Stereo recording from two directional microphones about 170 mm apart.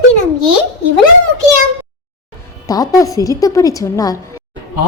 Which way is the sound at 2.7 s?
20° left (ahead or behind).